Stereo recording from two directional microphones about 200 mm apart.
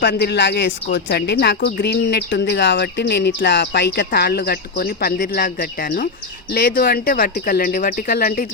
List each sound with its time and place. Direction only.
0.0 s a woman's voice: 50° left (ahead or behind)